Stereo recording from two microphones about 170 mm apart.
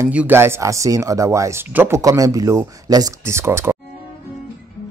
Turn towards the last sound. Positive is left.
turn(degrees=-15)  # may be behind; listen again after turning